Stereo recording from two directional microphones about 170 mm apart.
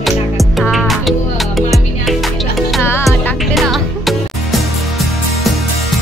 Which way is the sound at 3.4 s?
Centre (ahead or behind).